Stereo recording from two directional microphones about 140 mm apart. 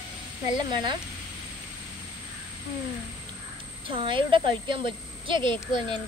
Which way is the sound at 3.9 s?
35° right (ahead or behind).